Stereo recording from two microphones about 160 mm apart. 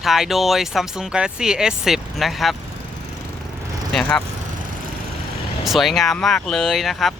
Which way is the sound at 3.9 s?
Centre (ahead or behind).